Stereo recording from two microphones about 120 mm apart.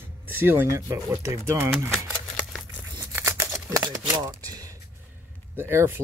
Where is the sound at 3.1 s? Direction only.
20° right (ahead or behind).